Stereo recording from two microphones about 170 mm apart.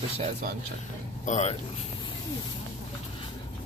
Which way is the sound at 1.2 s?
40° left (ahead or behind).